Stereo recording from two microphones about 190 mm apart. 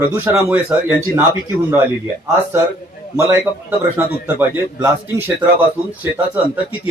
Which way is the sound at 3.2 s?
15° right (ahead or behind).